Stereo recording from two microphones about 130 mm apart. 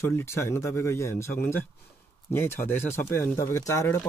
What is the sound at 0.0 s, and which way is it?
Speech, 20° left (ahead or behind).